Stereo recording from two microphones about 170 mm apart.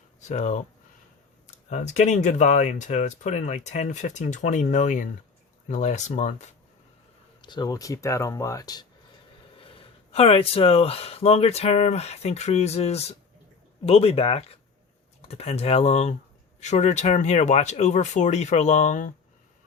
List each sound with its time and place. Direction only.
0.2 s speech: 45° left (ahead or behind)
7.4 s speech: 25° left (ahead or behind); by 19.1 s 50° left (ahead or behind)